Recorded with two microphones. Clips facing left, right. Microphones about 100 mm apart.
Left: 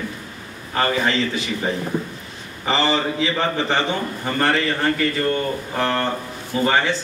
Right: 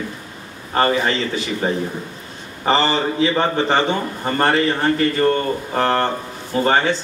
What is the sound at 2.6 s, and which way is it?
Speech, 40° right (ahead or behind).